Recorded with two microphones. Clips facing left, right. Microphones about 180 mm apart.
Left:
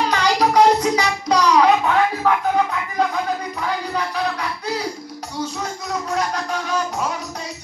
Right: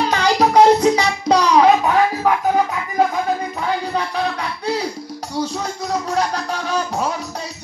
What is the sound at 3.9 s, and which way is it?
Music, 30° right (ahead or behind).